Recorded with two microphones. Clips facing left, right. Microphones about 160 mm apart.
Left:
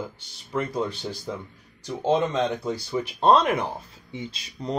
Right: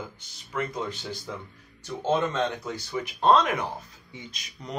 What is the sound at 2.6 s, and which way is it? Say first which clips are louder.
Speech: left 5 dB; 30° left (ahead or behind).